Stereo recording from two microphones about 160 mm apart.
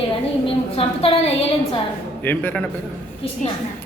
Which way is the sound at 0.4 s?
40° left (ahead or behind).